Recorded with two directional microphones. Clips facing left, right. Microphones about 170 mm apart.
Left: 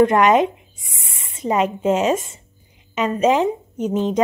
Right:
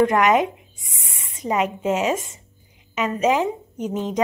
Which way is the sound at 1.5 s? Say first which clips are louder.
Left 3 dB; 35° left (ahead or behind).